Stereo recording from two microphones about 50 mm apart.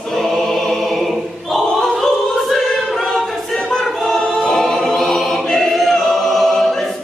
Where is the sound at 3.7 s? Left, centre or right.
Centre.